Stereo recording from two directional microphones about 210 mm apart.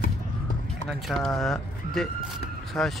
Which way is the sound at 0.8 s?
Centre (ahead or behind).